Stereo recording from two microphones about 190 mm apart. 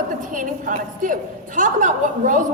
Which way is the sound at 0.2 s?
45° right (ahead or behind).